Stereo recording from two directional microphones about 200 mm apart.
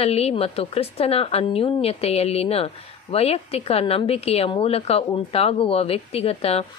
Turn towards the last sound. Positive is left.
turn(degrees=30)  # may be behind; listen again after turning